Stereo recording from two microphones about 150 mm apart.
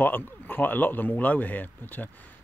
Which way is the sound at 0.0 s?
15° left (ahead or behind).